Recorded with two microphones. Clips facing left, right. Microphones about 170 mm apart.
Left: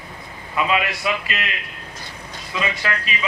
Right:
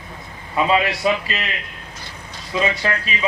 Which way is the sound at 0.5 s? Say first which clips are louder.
Right 3 dB; 30° right (ahead or behind).